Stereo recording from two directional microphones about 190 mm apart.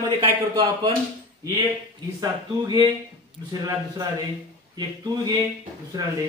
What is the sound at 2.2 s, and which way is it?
A man's voice, 20° right (ahead or behind).